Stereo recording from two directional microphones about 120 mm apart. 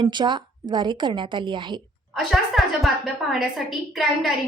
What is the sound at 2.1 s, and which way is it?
A woman's voice, centre (ahead or behind).